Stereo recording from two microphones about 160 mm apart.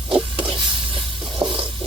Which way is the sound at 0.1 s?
30° right (ahead or behind).